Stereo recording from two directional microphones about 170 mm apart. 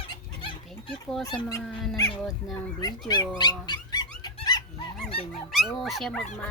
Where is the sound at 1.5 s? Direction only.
20° left (ahead or behind).